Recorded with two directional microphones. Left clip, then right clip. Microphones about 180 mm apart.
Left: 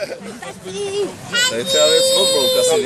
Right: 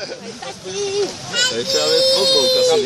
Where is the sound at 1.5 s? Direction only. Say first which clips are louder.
Left 4 dB; 35° left (ahead or behind).